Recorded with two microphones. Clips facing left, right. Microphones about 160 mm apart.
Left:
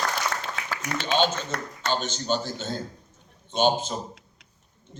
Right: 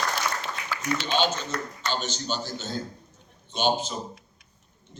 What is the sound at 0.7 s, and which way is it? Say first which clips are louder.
A man's voice: left 1 dB; 50° left (ahead or behind).